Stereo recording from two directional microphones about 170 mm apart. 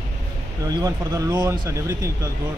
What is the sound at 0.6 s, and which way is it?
Speech, 20° right (ahead or behind).